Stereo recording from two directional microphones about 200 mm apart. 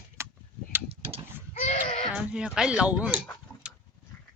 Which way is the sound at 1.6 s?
35° left (ahead or behind).